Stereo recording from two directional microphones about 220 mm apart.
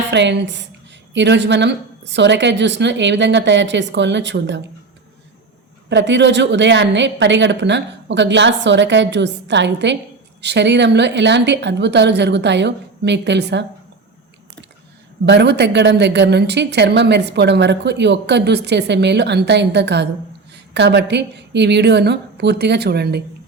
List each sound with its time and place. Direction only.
0.1 s a woman's voice: 55° right (ahead or behind)
5.9 s a woman's voice: 55° right (ahead or behind)
15.3 s a woman's voice: 50° right (ahead or behind)